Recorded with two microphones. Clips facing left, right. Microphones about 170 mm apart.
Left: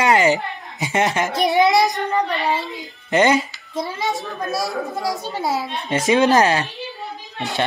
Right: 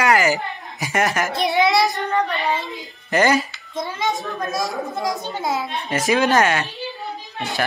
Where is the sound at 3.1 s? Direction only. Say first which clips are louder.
Left 1 dB; 20° left (ahead or behind).